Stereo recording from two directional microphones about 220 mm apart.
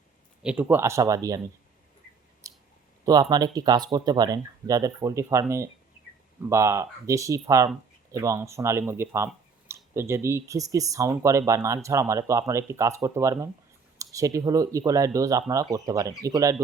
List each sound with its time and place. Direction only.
0.4 s speech: 5° right (ahead or behind)
2.4 s clicking: 15° right (ahead or behind)
3.0 s speech: 15° right (ahead or behind)